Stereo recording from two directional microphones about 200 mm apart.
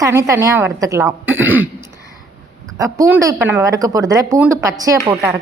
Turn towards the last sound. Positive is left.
turn(degrees=-15)  # may be behind; listen again after turning